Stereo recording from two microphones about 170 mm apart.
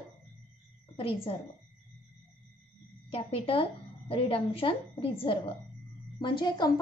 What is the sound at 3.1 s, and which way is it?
A woman's voice, 35° left (ahead or behind).